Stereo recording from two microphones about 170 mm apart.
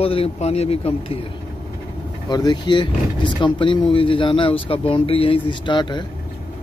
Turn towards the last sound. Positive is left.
turn(degrees=25)  # may be behind; listen again after turning